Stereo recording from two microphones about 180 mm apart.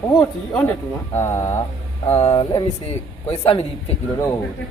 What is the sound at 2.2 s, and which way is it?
A man's voice, 35° left (ahead or behind).